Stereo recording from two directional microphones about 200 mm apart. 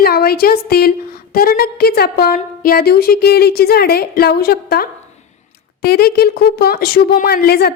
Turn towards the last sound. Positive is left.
turn(degrees=50)  # may be behind; listen again after turning